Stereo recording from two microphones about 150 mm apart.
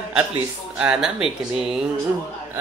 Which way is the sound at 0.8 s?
5° right (ahead or behind).